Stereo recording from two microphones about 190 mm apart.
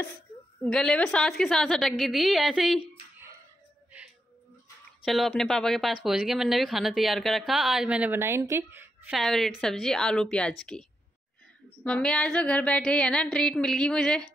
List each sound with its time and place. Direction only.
0.7 s speech: 5° left (ahead or behind)
5.0 s speech: centre (ahead or behind)
9.1 s speech: centre (ahead or behind)